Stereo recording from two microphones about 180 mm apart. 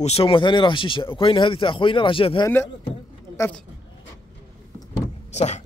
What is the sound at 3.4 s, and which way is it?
Speech, 10° left (ahead or behind).